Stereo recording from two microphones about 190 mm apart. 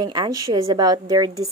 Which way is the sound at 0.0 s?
20° right (ahead or behind).